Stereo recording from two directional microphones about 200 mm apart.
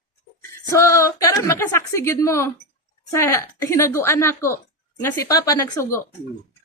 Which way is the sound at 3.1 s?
15° left (ahead or behind).